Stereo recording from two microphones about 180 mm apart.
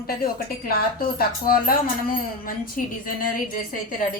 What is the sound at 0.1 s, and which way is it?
A woman's voice, 55° left (ahead or behind).